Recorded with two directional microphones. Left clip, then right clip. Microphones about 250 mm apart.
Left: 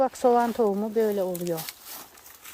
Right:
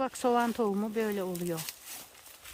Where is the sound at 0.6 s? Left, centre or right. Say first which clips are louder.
Left 7 dB; centre.